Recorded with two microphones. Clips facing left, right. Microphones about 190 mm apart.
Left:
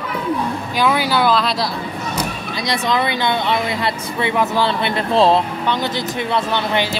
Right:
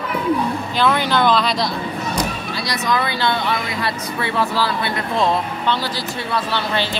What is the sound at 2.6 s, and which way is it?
Speech, 20° left (ahead or behind).